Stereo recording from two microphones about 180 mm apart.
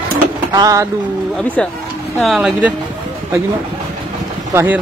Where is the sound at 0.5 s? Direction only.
20° right (ahead or behind).